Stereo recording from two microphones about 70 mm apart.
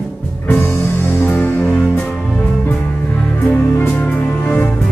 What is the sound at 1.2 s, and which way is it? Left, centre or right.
Music, left.